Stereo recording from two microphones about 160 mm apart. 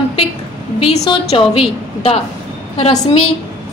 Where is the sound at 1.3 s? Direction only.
40° left (ahead or behind).